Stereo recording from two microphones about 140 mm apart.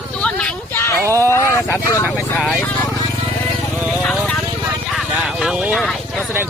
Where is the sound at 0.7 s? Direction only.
20° left (ahead or behind).